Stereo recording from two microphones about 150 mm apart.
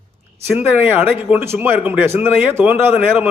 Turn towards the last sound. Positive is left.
turn(degrees=-15)  # may be behind; listen again after turning